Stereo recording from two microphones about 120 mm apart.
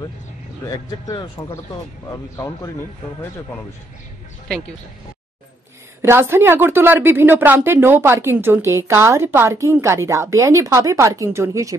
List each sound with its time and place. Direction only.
0.7 s speech: 30° left (ahead or behind)
4.5 s speech: 5° left (ahead or behind)
6.0 s speech: 20° right (ahead or behind)